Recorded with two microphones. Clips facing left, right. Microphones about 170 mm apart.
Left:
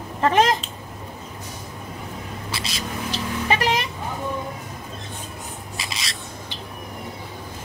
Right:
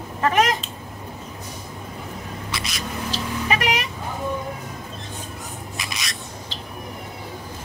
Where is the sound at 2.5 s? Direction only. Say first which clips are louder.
Left 1 dB; 30° left (ahead or behind).